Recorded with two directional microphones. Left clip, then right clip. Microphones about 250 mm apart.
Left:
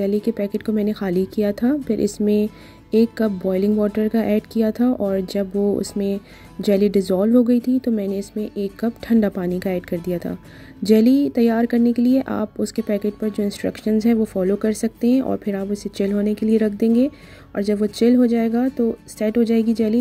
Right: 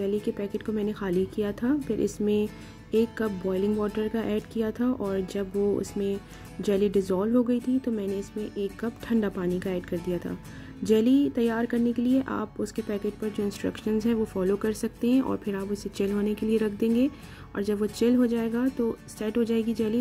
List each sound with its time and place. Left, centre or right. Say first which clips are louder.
0.0 s a woman's voice: left 7 dB; left